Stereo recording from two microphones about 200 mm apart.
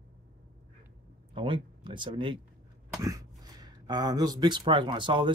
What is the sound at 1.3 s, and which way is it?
Speech, 25° right (ahead or behind).